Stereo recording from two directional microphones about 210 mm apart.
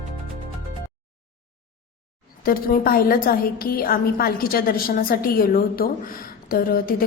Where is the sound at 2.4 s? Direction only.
45° left (ahead or behind).